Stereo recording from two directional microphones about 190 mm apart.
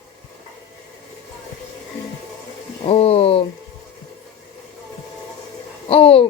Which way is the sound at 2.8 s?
30° left (ahead or behind).